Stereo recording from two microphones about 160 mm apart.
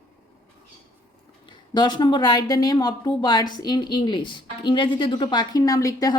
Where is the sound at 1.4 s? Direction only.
25° left (ahead or behind).